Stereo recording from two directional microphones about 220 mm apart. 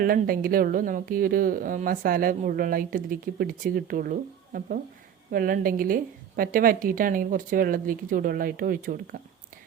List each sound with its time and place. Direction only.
0.0 s speech: 40° right (ahead or behind)